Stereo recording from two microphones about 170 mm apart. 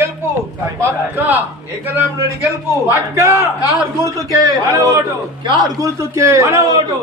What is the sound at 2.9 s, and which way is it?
A man's voice, 15° right (ahead or behind).